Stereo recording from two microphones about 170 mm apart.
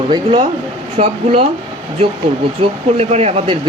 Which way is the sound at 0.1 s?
35° right (ahead or behind).